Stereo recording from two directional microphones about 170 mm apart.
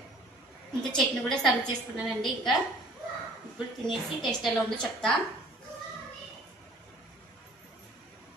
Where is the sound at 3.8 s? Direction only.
Centre (ahead or behind).